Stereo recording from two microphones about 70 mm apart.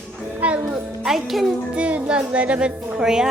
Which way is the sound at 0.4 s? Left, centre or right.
Centre.